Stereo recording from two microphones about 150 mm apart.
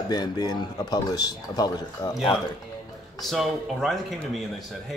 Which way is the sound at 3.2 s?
Centre (ahead or behind).